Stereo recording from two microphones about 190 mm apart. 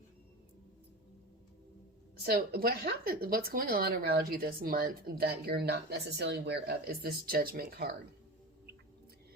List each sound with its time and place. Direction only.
2.1 s speech: 55° right (ahead or behind)